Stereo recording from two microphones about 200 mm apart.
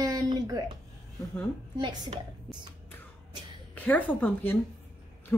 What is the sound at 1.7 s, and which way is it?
Speech, 20° right (ahead or behind).